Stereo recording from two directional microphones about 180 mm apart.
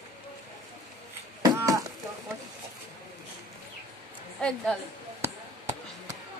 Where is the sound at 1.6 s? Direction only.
20° right (ahead or behind).